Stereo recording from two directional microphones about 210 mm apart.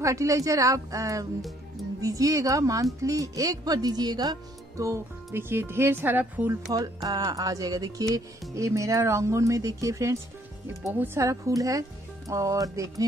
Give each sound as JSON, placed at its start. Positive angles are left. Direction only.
{"t": 0.0, "sound": "speech", "side_deg": -15}